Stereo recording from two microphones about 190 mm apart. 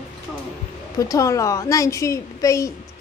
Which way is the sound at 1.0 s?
15° left (ahead or behind).